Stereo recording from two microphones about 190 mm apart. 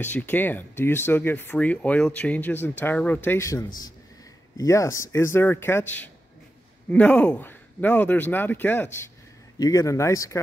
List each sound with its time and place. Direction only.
0.0 s speech: 10° left (ahead or behind)